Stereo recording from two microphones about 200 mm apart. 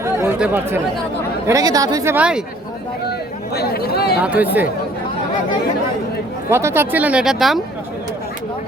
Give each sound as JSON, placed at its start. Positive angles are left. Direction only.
{"t": 0.0, "sound": "chatter", "side_deg": -10}
{"t": 1.5, "sound": "speech", "side_deg": -15}
{"t": 3.1, "sound": "speech", "side_deg": 55}
{"t": 4.2, "sound": "speech", "side_deg": -10}
{"t": 6.5, "sound": "speech", "side_deg": -10}